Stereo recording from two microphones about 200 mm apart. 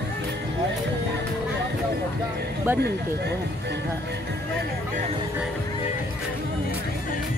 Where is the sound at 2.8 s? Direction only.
55° right (ahead or behind).